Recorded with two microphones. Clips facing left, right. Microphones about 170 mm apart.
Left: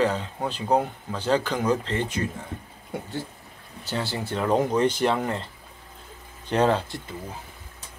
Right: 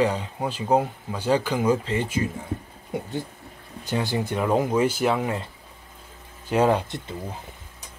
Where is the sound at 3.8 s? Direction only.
15° right (ahead or behind).